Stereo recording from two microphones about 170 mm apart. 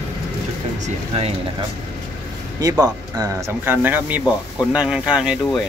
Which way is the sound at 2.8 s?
20° right (ahead or behind).